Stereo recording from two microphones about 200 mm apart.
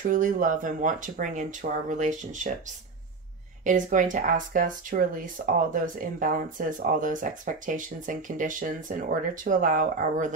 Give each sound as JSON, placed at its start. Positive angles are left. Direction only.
{"t": 0.1, "sound": "speech", "side_deg": -40}
{"t": 3.6, "sound": "speech", "side_deg": -40}